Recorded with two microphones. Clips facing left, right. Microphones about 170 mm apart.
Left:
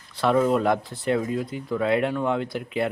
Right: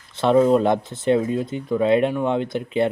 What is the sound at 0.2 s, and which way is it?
Speech, 20° right (ahead or behind).